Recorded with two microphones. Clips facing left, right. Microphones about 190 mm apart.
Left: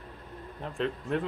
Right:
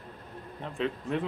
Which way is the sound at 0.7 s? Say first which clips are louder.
Even; centre (ahead or behind).